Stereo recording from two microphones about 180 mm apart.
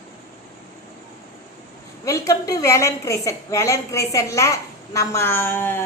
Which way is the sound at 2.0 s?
15° left (ahead or behind).